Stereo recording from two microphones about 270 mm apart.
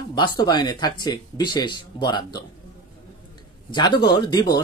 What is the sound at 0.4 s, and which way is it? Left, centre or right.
Speech, centre.